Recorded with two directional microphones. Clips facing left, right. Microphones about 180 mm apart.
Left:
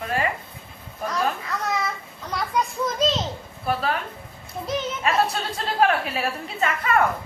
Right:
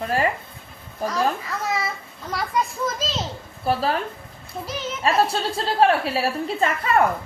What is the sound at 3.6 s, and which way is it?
Speech, 35° right (ahead or behind).